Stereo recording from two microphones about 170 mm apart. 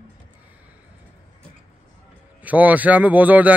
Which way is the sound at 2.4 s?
10° right (ahead or behind).